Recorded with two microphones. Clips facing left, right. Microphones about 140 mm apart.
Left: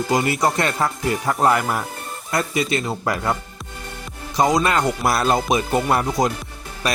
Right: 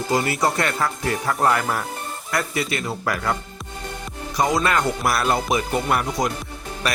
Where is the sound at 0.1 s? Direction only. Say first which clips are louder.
Left 1 dB; 20° left (ahead or behind).